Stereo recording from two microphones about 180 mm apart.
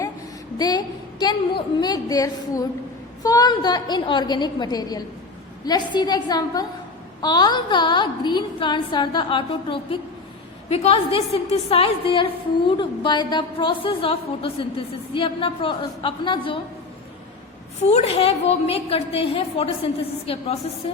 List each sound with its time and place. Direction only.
0.6 s a woman's voice: 20° left (ahead or behind)
17.8 s a woman's voice: 35° left (ahead or behind)